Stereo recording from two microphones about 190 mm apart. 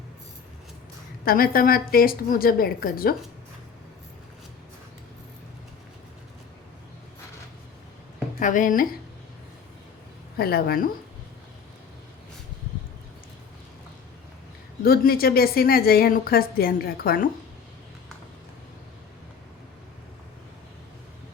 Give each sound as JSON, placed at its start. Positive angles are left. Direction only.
{"t": 1.2, "sound": "a woman's voice", "side_deg": 50}
{"t": 8.4, "sound": "a woman's voice", "side_deg": 45}
{"t": 10.3, "sound": "a woman's voice", "side_deg": 55}
{"t": 14.8, "sound": "a woman's voice", "side_deg": 50}